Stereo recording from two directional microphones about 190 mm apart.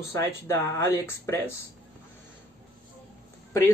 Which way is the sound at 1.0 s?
10° left (ahead or behind).